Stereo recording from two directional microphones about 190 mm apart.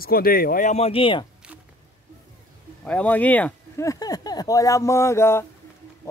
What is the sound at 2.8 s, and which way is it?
Speech, 5° left (ahead or behind).